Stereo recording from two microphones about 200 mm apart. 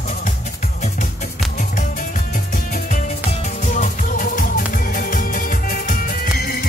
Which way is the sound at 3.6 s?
40° left (ahead or behind).